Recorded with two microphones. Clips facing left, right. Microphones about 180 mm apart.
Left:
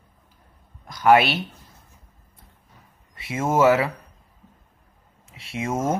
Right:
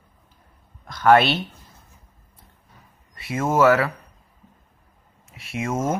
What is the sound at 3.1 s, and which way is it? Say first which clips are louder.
Speech: right 1 dB; 20° left (ahead or behind).